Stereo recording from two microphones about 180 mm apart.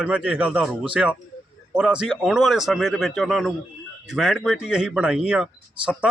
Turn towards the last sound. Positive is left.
turn(degrees=-5)  # may be behind; listen again after turning